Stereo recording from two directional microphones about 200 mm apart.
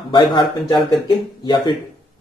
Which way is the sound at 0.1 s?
25° left (ahead or behind).